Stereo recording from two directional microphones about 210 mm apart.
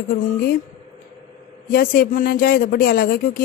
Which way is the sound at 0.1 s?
45° left (ahead or behind).